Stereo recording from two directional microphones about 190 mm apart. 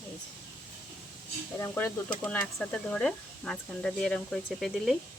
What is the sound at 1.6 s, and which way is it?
Speech, 15° left (ahead or behind).